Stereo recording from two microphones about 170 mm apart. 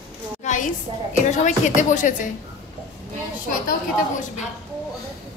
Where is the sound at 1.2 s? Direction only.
45° left (ahead or behind).